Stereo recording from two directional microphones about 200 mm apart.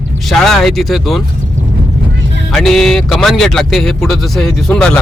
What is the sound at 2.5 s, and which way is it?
Speech, centre (ahead or behind).